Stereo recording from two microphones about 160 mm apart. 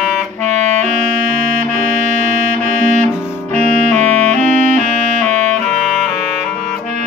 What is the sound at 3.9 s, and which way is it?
Clarinet, 45° right (ahead or behind).